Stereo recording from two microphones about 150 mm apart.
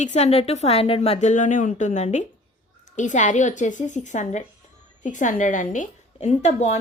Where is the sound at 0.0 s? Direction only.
50° left (ahead or behind).